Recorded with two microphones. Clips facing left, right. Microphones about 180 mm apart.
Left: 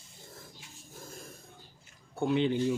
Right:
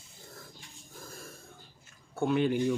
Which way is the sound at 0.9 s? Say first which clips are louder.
Even; 20° left (ahead or behind).